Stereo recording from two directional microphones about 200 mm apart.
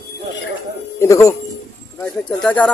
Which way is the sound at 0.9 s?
15° left (ahead or behind).